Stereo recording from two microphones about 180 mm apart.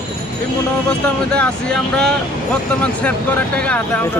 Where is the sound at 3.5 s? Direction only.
5° left (ahead or behind).